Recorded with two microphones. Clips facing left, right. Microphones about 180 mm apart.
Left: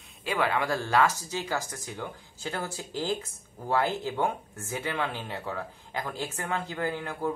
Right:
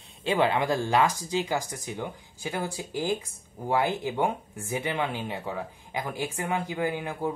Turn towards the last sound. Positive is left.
turn(degrees=-15)  # may be behind; listen again after turning